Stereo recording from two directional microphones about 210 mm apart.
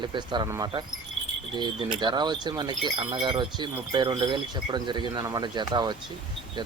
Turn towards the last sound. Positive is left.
turn(degrees=-20)  # may be behind; listen again after turning